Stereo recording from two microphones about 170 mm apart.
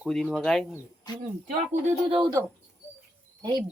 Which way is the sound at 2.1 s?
25° right (ahead or behind).